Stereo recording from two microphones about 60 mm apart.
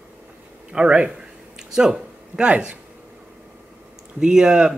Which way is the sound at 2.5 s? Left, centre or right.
Right.